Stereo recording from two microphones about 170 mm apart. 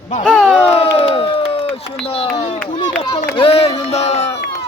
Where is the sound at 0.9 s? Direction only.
35° left (ahead or behind).